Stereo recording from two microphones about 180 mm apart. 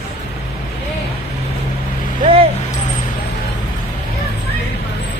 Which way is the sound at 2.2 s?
30° right (ahead or behind).